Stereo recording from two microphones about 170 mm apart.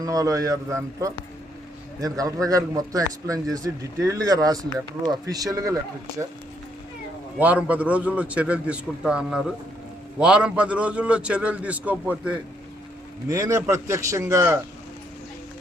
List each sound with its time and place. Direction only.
0.0 s a man's voice: 20° right (ahead or behind)
7.3 s a man's voice: 10° right (ahead or behind)
13.2 s a man's voice: 20° right (ahead or behind)